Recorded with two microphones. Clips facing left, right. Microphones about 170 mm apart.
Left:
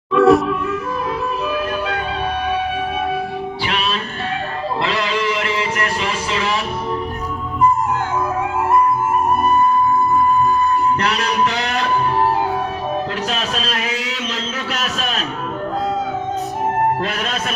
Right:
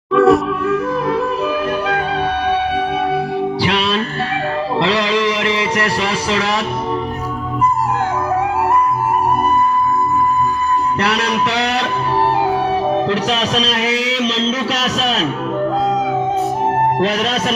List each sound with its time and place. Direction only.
0.1 s music: centre (ahead or behind)
4.8 s music: 35° right (ahead or behind)